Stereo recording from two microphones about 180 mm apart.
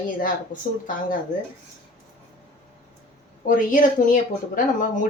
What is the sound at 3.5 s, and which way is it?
Speech, 50° left (ahead or behind).